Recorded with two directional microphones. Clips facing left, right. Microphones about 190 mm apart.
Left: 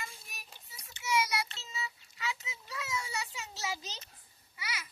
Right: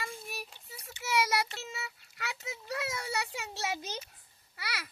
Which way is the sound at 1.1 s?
65° right (ahead or behind).